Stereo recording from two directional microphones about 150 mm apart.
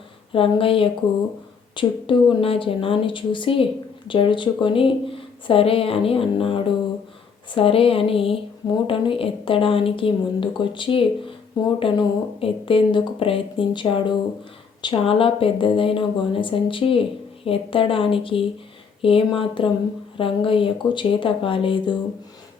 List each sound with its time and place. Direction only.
0.3 s speech: 35° left (ahead or behind)